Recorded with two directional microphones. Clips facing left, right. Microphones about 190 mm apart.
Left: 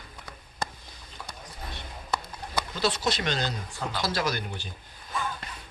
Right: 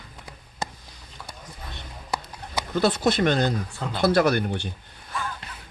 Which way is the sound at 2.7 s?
55° right (ahead or behind).